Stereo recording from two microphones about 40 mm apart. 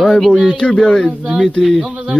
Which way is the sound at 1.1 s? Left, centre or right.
Centre.